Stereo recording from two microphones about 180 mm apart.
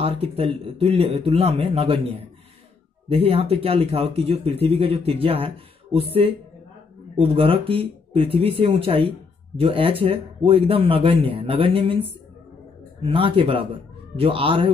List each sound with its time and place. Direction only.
0.0 s speech: 35° right (ahead or behind)